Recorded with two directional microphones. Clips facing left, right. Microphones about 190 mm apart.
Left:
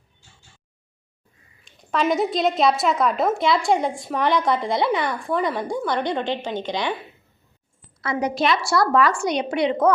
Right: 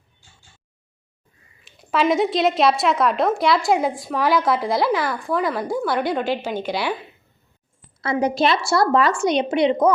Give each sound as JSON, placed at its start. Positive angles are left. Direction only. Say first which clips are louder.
{"t": 1.6, "sound": "a woman's voice", "louder": "right 2 dB", "side_deg": -5}
{"t": 8.0, "sound": "a woman's voice", "louder": "right 3 dB", "side_deg": -30}